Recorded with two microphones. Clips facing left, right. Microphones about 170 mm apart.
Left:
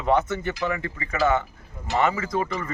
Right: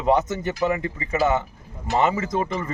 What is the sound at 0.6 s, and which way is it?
Speech, 20° right (ahead or behind).